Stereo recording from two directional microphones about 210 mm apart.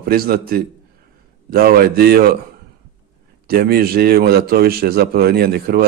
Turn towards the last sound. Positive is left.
turn(degrees=-45)  # may be behind; listen again after turning